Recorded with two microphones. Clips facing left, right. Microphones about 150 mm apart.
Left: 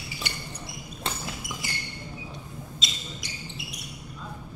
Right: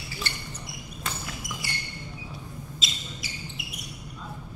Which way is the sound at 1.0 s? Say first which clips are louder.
Left 2 dB; 25° left (ahead or behind).